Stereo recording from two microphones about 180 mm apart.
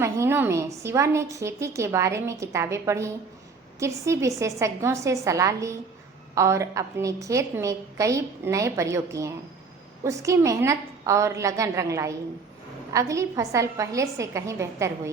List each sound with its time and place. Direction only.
0.0 s a woman's voice: 15° right (ahead or behind)